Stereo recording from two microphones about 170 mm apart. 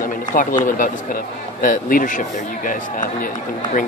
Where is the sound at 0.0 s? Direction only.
50° left (ahead or behind).